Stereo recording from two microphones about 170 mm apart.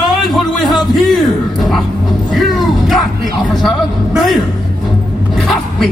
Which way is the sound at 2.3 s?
Centre (ahead or behind).